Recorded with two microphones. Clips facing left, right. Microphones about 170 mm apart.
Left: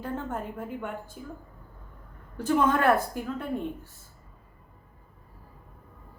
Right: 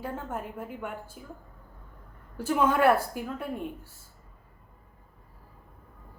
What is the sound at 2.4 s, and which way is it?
A man's voice, 10° right (ahead or behind).